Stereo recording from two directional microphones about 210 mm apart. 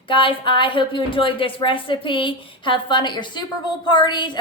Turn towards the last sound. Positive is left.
turn(degrees=20)  # may be behind; listen again after turning